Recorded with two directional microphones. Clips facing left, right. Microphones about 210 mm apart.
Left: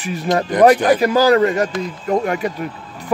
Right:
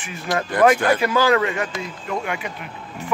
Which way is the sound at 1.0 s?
40° left (ahead or behind).